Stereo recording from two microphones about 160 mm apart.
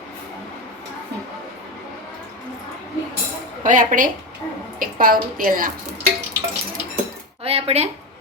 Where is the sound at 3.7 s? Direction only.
55° right (ahead or behind).